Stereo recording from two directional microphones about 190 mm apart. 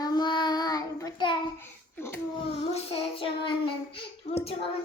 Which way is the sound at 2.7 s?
30° left (ahead or behind).